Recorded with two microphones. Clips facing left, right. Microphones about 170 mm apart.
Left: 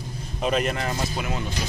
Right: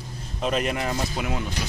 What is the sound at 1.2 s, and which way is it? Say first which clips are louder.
Speech: right 1 dB; 15° right (ahead or behind).